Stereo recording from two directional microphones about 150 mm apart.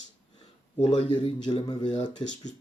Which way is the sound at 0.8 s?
35° left (ahead or behind).